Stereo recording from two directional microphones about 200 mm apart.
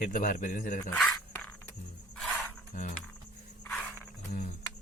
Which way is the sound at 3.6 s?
10° left (ahead or behind).